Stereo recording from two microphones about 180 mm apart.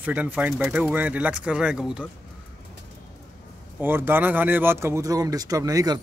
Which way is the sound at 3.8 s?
10° right (ahead or behind).